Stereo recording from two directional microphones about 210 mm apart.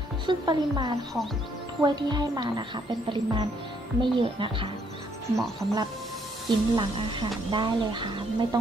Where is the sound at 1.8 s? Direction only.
20° right (ahead or behind).